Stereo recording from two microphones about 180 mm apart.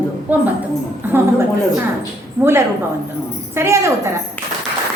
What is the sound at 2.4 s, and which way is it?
A woman's voice, 15° right (ahead or behind).